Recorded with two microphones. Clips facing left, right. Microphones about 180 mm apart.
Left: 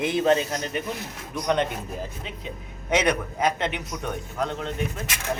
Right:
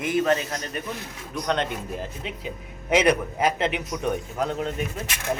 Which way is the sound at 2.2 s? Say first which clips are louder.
Right 2 dB; 5° right (ahead or behind).